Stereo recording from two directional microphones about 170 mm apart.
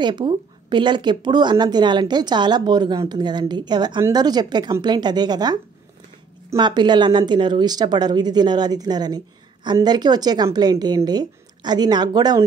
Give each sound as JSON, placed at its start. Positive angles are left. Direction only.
{"t": 0.0, "sound": "speech", "side_deg": -25}